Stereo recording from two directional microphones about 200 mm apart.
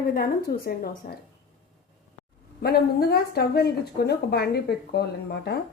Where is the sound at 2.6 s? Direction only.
50° left (ahead or behind).